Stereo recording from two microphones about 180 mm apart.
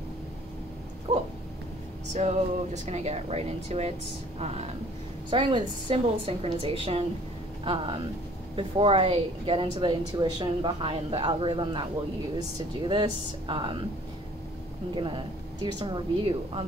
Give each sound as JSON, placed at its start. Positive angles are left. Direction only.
{"t": 1.1, "sound": "a woman's voice", "side_deg": -30}
{"t": 15.0, "sound": "a woman's voice", "side_deg": -30}